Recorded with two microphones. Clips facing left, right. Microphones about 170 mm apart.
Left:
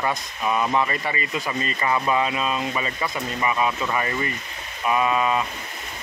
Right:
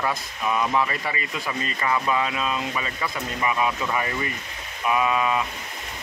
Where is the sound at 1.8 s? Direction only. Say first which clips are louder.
Left 1 dB; 10° left (ahead or behind).